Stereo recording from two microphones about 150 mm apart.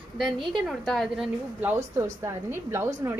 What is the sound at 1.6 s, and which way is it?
A woman's voice, 15° right (ahead or behind).